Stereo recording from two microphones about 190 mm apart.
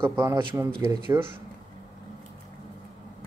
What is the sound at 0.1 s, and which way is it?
Speech, 15° right (ahead or behind).